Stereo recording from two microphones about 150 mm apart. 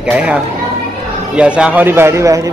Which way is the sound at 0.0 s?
5° right (ahead or behind).